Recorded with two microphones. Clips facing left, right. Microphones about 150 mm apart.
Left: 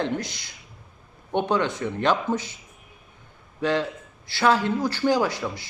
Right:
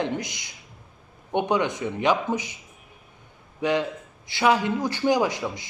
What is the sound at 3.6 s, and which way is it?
A man's voice, 15° right (ahead or behind).